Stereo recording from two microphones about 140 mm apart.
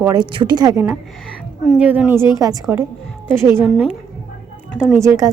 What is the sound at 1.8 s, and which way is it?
A woman's voice, 10° right (ahead or behind).